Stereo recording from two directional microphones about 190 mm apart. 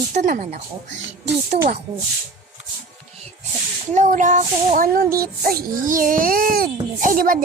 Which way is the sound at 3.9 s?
40° right (ahead or behind).